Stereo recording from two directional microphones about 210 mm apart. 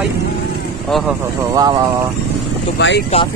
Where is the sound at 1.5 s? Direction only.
20° right (ahead or behind).